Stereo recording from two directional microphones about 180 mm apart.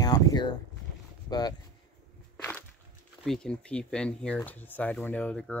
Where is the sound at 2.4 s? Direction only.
10° left (ahead or behind).